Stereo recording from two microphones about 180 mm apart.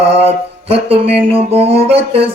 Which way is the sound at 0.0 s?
35° right (ahead or behind).